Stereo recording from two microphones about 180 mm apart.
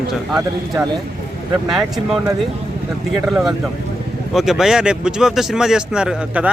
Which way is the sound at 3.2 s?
Centre (ahead or behind).